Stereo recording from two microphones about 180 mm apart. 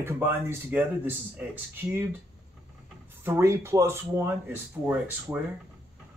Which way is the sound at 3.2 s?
15° right (ahead or behind).